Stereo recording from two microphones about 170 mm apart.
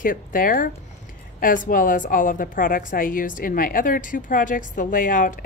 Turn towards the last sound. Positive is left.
turn(degrees=50)  # may be behind; listen again after turning